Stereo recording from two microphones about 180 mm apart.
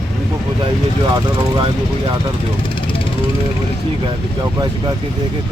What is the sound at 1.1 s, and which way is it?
Speech, 25° right (ahead or behind).